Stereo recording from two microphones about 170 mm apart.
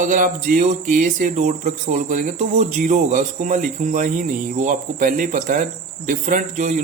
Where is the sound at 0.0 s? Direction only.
50° right (ahead or behind).